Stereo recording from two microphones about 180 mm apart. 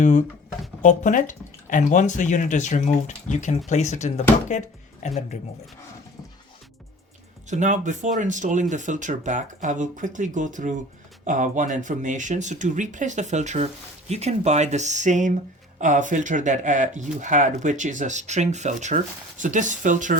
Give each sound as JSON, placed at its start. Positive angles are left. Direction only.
{"t": 0.0, "sound": "speech", "side_deg": 45}
{"t": 7.5, "sound": "speech", "side_deg": -45}